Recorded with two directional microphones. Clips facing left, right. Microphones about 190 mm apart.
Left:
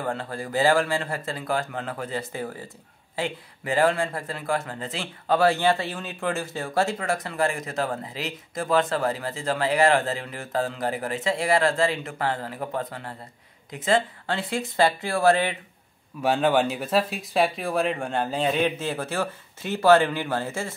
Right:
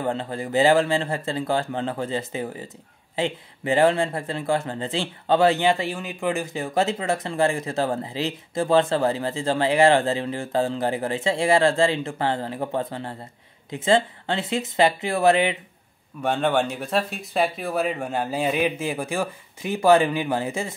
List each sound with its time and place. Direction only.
0.0 s speech: 20° right (ahead or behind)
16.2 s speech: 5° left (ahead or behind); by 20.7 s 15° right (ahead or behind)